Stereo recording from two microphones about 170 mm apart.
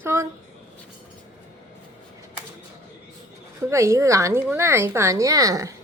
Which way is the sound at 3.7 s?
15° right (ahead or behind).